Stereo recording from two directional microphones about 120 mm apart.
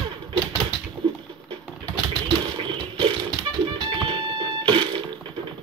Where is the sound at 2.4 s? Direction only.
45° right (ahead or behind).